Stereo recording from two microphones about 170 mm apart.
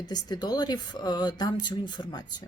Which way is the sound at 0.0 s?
25° left (ahead or behind).